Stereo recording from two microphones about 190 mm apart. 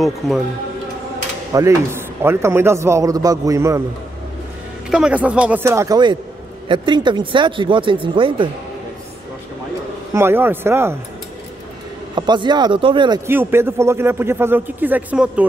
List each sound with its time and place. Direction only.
1.5 s speech: 15° right (ahead or behind)
4.8 s speech: 5° right (ahead or behind); by 8.5 s 25° right (ahead or behind)
10.1 s speech: 10° right (ahead or behind)
12.2 s speech: 25° right (ahead or behind)
13.3 s speech: 10° right (ahead or behind)